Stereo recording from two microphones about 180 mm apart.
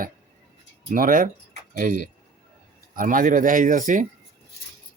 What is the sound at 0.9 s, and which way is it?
Speech, 50° right (ahead or behind).